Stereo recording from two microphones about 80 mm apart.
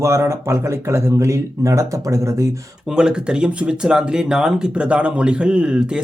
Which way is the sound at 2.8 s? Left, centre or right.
Centre.